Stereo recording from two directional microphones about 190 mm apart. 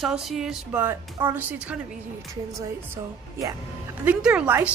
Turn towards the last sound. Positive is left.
turn(degrees=-5)  # may be behind; listen again after turning